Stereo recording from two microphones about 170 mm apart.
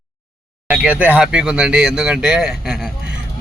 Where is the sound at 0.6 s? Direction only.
5° right (ahead or behind).